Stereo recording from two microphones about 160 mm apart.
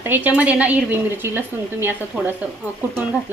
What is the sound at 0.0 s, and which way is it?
Speech, 10° right (ahead or behind).